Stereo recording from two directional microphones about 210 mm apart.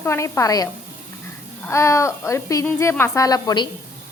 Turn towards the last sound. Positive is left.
turn(degrees=20)  # may be behind; listen again after turning